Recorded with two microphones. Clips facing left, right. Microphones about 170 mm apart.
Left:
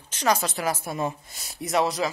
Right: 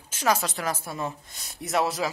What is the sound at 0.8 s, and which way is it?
Speech, 15° left (ahead or behind).